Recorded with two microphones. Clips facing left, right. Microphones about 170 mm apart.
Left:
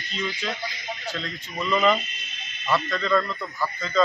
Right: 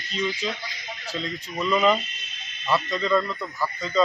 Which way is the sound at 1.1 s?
5° right (ahead or behind).